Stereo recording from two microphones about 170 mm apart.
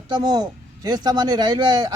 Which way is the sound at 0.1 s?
25° right (ahead or behind).